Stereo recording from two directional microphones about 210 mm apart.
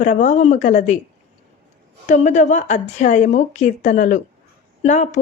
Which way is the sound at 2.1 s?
35° left (ahead or behind).